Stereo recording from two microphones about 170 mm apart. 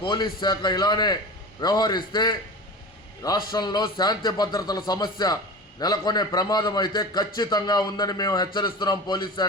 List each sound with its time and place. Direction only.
0.0 s a man's voice: 25° left (ahead or behind)